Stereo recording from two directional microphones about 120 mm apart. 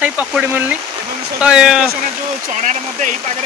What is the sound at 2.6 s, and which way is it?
Speech, 90° right.